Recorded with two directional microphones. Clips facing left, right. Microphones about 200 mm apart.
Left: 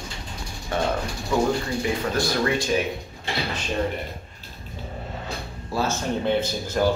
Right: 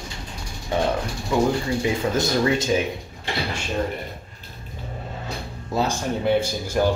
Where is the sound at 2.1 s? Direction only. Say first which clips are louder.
Right 2 dB; 20° right (ahead or behind).